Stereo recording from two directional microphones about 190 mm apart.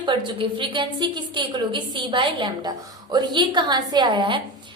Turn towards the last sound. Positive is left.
turn(degrees=-25)  # may be behind; listen again after turning